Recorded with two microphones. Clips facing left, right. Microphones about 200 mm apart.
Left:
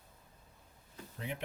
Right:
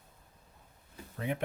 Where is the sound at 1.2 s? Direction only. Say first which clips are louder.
Right 7 dB; 55° right (ahead or behind).